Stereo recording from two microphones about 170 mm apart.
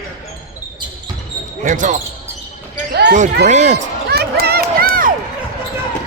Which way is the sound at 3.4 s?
45° right (ahead or behind).